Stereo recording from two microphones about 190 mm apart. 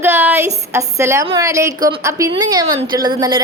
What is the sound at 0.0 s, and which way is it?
A woman's voice, 10° right (ahead or behind).